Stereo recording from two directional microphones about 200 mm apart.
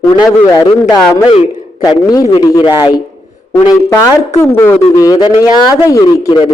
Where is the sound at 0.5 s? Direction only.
20° left (ahead or behind).